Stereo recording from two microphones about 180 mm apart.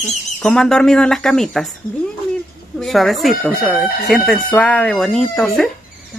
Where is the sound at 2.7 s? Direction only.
Centre (ahead or behind).